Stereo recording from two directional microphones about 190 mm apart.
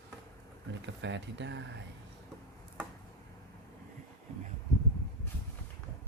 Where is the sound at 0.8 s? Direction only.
65° right (ahead or behind).